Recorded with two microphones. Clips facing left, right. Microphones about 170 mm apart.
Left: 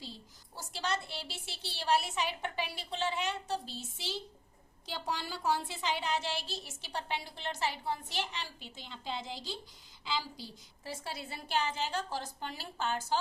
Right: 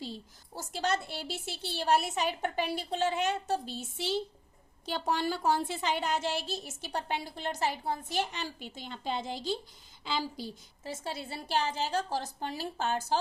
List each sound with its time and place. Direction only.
0.5 s a woman's voice: 50° right (ahead or behind)
10.8 s a woman's voice: 25° right (ahead or behind); by 13.1 s 40° right (ahead or behind)